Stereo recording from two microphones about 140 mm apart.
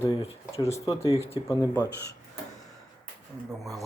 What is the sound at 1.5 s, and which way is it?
Speech, 20° left (ahead or behind).